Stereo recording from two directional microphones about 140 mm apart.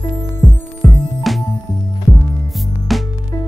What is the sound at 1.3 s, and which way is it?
Music, centre (ahead or behind).